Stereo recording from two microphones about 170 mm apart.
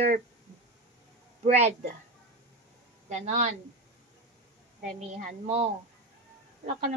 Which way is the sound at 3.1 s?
45° right (ahead or behind).